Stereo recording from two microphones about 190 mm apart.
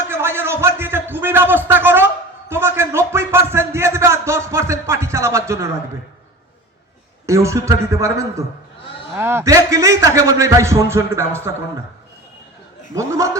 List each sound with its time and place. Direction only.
0.1 s a sound: 10° right (ahead or behind)
7.3 s a man's voice: 15° right (ahead or behind)
12.9 s a man's voice: 15° right (ahead or behind)